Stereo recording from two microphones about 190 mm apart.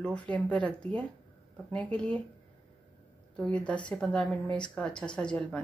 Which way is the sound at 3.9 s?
5° left (ahead or behind).